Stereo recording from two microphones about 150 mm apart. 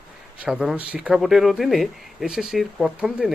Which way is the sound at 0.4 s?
5° right (ahead or behind).